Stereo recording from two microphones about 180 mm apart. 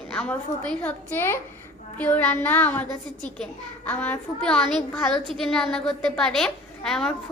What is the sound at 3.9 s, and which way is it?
A woman's voice, 10° left (ahead or behind).